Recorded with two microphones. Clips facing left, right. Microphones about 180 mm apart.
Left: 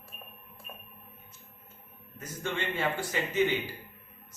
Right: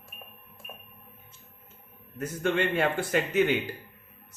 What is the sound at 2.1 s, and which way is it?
Speech, 65° right (ahead or behind).